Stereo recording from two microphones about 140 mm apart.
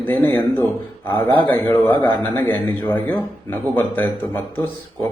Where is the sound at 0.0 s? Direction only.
15° left (ahead or behind).